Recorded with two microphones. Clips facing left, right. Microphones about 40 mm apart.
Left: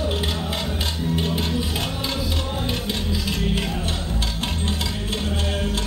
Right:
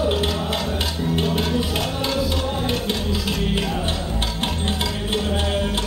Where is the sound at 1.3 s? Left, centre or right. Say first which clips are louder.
Right 3 dB; right.